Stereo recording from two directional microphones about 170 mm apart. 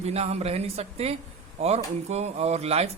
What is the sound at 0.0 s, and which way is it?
Speech, 35° right (ahead or behind).